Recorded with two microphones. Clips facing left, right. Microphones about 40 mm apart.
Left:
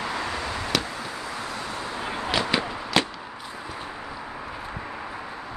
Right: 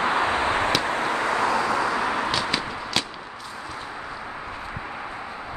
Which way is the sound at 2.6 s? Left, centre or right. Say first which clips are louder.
Left 3 dB; centre.